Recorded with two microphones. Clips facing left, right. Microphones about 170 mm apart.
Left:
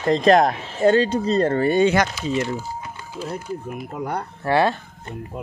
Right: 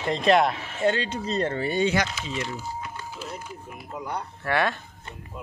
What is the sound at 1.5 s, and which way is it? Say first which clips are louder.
Speech: left 6 dB; 55° left (ahead or behind).